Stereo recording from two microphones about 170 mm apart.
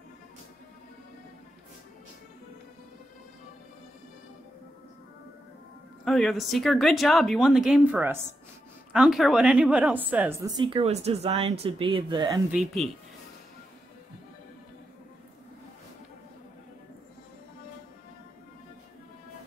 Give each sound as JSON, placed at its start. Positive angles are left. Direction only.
{"t": 6.0, "sound": "speech", "side_deg": 0}
{"t": 8.9, "sound": "a woman's voice", "side_deg": -5}
{"t": 10.4, "sound": "speech", "side_deg": -25}
{"t": 12.4, "sound": "speech", "side_deg": -5}